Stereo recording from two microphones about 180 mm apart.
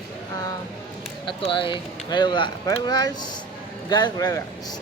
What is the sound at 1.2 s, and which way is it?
Speech, 30° left (ahead or behind).